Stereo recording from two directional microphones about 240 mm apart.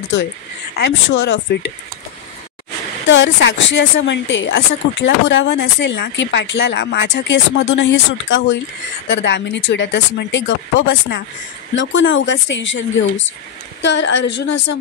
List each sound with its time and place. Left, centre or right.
0.7 s a woman's voice: left
3.1 s a woman's voice: left